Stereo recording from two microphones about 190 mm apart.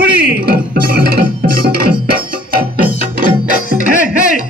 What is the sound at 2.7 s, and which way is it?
Music, 50° right (ahead or behind).